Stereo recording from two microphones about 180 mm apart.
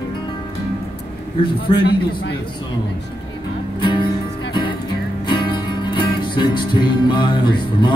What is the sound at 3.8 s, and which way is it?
Music, 25° left (ahead or behind).